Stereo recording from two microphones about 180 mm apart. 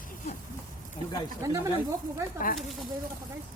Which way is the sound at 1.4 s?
15° right (ahead or behind).